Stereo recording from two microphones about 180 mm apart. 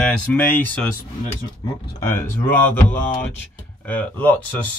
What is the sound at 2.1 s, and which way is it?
Speech, 10° left (ahead or behind).